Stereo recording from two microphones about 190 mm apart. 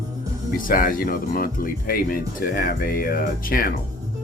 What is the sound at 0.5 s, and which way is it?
Speech, 45° left (ahead or behind).